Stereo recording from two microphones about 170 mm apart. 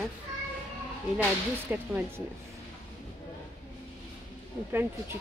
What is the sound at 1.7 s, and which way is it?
Speech, 10° right (ahead or behind).